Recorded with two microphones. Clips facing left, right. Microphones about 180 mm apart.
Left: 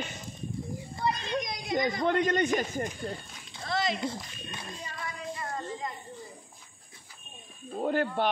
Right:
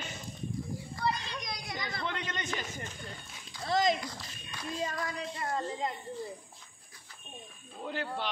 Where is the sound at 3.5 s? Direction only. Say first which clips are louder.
Right 1 dB; 25° left (ahead or behind).